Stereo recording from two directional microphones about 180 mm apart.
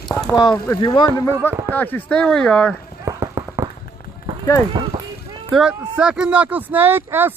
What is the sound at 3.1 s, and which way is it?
Run, 15° right (ahead or behind).